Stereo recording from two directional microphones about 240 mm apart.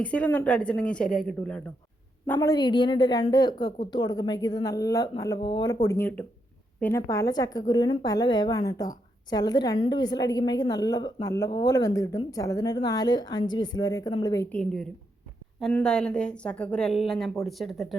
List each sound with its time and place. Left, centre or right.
0.0 s a woman's voice: centre
14.5 s a woman's voice: centre